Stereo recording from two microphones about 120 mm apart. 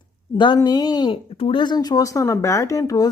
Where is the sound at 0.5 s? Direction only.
35° left (ahead or behind).